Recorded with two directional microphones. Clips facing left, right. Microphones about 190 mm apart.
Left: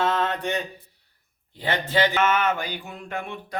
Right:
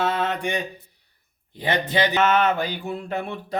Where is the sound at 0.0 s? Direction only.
5° right (ahead or behind).